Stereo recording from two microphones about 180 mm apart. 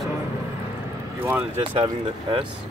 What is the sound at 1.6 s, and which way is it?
Speech, 30° right (ahead or behind).